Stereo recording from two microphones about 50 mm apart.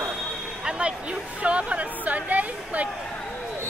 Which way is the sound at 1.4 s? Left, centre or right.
Right.